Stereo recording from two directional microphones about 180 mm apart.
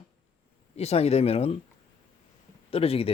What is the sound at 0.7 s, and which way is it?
Speech, 35° left (ahead or behind).